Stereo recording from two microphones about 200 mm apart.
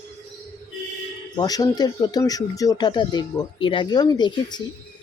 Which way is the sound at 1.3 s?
20° left (ahead or behind).